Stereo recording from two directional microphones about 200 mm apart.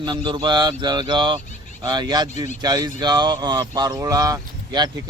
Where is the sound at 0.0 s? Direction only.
20° right (ahead or behind).